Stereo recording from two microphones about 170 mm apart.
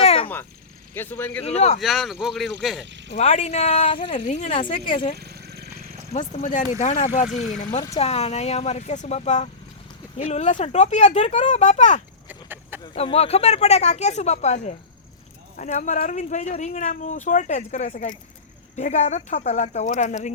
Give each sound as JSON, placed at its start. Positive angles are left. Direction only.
{"t": 0.0, "sound": "a sound", "side_deg": 35}
{"t": 0.9, "sound": "speech", "side_deg": 10}
{"t": 1.5, "sound": "speech", "side_deg": 40}
{"t": 1.8, "sound": "speech", "side_deg": 0}
{"t": 2.8, "sound": "speech", "side_deg": -90}
{"t": 3.2, "sound": "speech", "side_deg": 35}
{"t": 5.1, "sound": "purr", "side_deg": -70}
{"t": 6.1, "sound": "speech", "side_deg": 45}
{"t": 12.3, "sound": "a sound", "side_deg": -10}
{"t": 12.8, "sound": "speech", "side_deg": 35}